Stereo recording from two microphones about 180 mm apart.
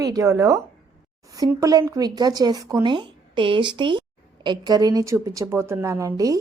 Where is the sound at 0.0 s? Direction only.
15° right (ahead or behind).